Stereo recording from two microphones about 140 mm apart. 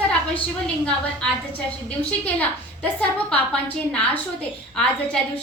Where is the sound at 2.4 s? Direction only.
10° left (ahead or behind).